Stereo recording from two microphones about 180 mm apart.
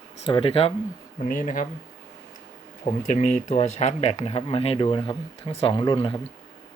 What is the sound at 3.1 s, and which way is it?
Speech, 45° left (ahead or behind).